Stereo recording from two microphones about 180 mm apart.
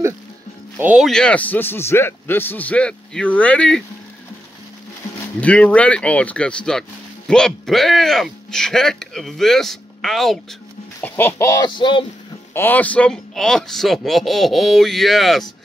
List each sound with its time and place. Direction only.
0.7 s a man's voice: 5° right (ahead or behind)
5.4 s a man's voice: 5° left (ahead or behind)
11.7 s speech: 25° left (ahead or behind)
12.5 s speech: 10° left (ahead or behind)